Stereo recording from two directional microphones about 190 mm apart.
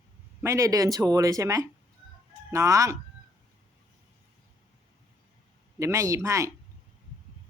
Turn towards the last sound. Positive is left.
turn(degrees=-15)  # may be behind; listen again after turning